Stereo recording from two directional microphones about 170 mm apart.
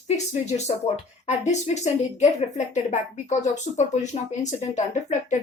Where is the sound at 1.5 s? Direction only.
40° left (ahead or behind).